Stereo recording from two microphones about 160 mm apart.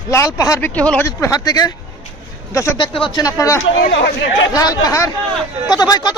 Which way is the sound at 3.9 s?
90° left.